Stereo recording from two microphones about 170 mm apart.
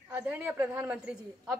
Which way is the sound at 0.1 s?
10° right (ahead or behind).